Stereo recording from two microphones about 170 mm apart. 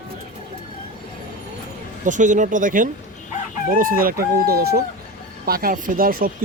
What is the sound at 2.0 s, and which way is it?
Speech, 45° right (ahead or behind).